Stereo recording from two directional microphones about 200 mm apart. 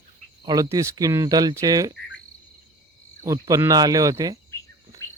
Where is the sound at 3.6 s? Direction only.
20° right (ahead or behind).